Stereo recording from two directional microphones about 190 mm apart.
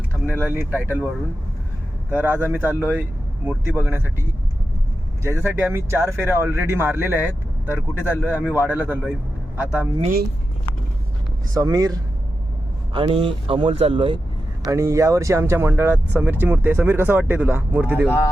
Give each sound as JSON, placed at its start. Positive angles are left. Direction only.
{"t": 0.3, "sound": "speech", "side_deg": -10}
{"t": 5.2, "sound": "speech", "side_deg": -15}
{"t": 11.5, "sound": "speech", "side_deg": -20}
{"t": 14.7, "sound": "speech", "side_deg": -15}